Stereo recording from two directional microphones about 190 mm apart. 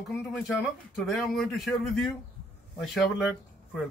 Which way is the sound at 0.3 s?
Centre (ahead or behind).